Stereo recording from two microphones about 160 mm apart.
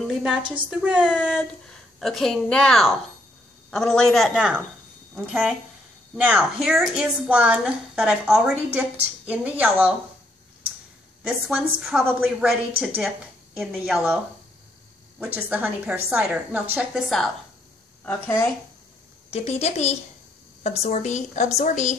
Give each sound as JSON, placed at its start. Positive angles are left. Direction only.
{"t": 0.0, "sound": "a sound", "side_deg": 0}
{"t": 0.6, "sound": "a woman's voice", "side_deg": -5}
{"t": 11.2, "sound": "a woman's voice", "side_deg": -5}
{"t": 18.0, "sound": "speech", "side_deg": 15}
{"t": 19.3, "sound": "speech", "side_deg": 40}